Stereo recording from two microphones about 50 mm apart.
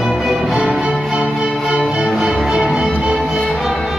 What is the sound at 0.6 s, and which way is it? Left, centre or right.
Music, right.